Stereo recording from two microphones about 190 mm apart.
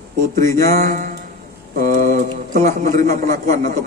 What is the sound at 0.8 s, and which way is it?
Speech, 45° right (ahead or behind).